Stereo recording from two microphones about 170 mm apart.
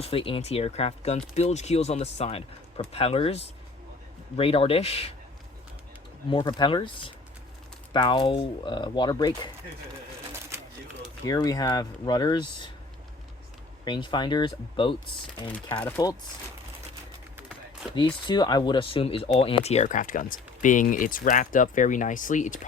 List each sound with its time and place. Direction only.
0.0 s speech: 30° left (ahead or behind)
6.3 s speech: 25° left (ahead or behind)
10.5 s a sound: 15° right (ahead or behind)
11.3 s speech: 20° left (ahead or behind)
13.8 s speech: 25° left (ahead or behind)
16.0 s speech: 25° left (ahead or behind)
17.9 s speech: 25° left (ahead or behind); by 22.6 s 50° left (ahead or behind)